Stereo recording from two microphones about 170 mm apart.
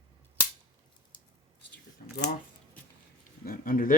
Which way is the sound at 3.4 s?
55° left (ahead or behind).